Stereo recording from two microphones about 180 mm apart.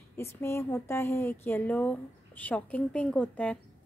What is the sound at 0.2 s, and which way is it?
Speech, 15° left (ahead or behind).